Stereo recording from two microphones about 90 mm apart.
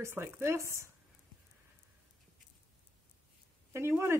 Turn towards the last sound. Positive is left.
turn(degrees=-30)  # may be behind; listen again after turning